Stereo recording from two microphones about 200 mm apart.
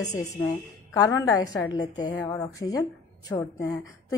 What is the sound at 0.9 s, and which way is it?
A woman's voice, 15° left (ahead or behind).